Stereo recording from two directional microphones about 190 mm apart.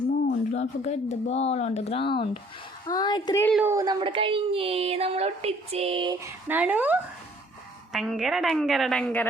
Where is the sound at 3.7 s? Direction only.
20° right (ahead or behind).